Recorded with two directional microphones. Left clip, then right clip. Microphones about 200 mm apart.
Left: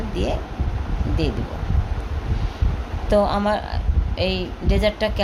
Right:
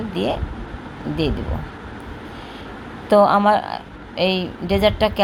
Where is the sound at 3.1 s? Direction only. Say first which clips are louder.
Right 6 dB; 20° right (ahead or behind).